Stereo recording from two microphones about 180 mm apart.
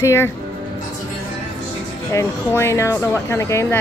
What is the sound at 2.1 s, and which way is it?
Speech, 15° left (ahead or behind).